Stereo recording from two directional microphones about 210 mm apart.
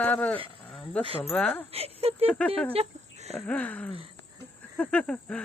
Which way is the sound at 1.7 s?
30° right (ahead or behind).